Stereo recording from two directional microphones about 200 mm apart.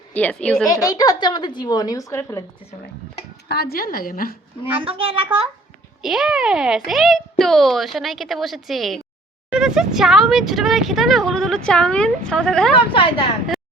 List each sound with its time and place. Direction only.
0.1 s a woman's voice: 5° left (ahead or behind)
0.9 s a woman's voice: 20° left (ahead or behind)
3.5 s a woman's voice: 50° left (ahead or behind)
4.8 s a child's voice: 25° right (ahead or behind)
6.0 s speech: centre (ahead or behind)
12.9 s a woman's voice: 25° left (ahead or behind)